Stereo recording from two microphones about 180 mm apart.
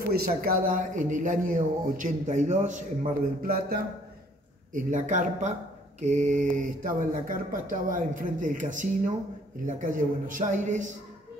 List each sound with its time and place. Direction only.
0.1 s a man's voice: 55° right (ahead or behind)
4.7 s a man's voice: 45° right (ahead or behind)